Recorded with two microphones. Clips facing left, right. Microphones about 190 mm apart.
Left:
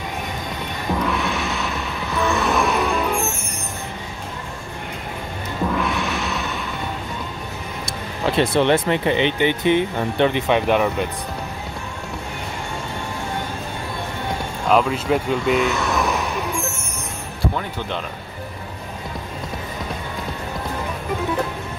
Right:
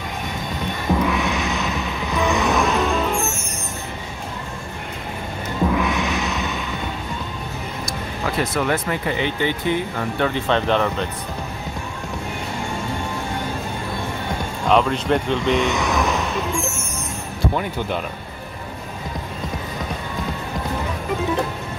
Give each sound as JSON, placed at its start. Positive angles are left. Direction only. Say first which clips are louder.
{"t": 1.0, "sound": "music", "louder": "right 1 dB", "side_deg": 0}
{"t": 2.1, "sound": "music", "louder": "right 1 dB", "side_deg": -15}
{"t": 2.4, "sound": "music", "louder": "right 1 dB", "side_deg": 0}
{"t": 5.7, "sound": "music", "louder": "even", "side_deg": 0}
{"t": 7.8, "sound": "speech", "louder": "left 3 dB", "side_deg": 25}
{"t": 14.7, "sound": "speech", "louder": "even", "side_deg": 5}
{"t": 15.9, "sound": "a sound", "louder": "even", "side_deg": 0}